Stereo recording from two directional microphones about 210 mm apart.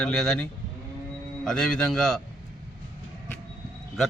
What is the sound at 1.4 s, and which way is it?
Speech, centre (ahead or behind).